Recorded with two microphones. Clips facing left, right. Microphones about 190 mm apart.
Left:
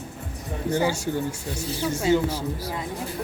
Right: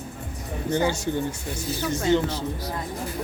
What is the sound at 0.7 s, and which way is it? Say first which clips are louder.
Speech: even; 10° left (ahead or behind).